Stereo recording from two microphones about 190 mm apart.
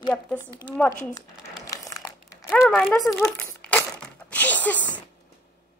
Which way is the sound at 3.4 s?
10° left (ahead or behind).